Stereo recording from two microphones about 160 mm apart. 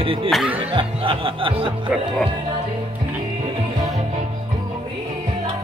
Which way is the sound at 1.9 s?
5° right (ahead or behind).